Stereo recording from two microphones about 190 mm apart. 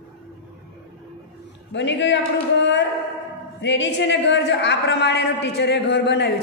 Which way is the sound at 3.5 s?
65° left (ahead or behind).